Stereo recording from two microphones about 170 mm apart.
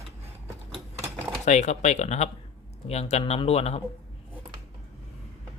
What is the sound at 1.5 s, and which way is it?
Speech, 45° left (ahead or behind).